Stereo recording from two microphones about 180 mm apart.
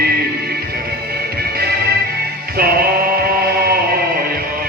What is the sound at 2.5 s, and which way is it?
Music, 55° right (ahead or behind).